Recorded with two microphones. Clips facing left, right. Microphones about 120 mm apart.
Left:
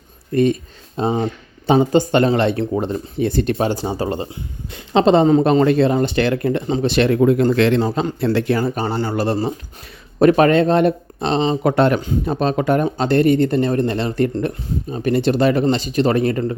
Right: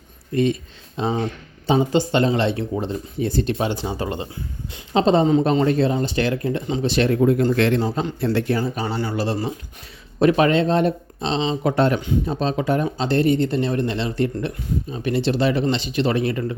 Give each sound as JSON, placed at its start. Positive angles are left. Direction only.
{"t": 1.0, "sound": "speech", "side_deg": 40}
{"t": 1.6, "sound": "speech", "side_deg": 55}
{"t": 3.6, "sound": "speech", "side_deg": 40}
{"t": 4.7, "sound": "speech", "side_deg": 70}
{"t": 8.7, "sound": "speech", "side_deg": 55}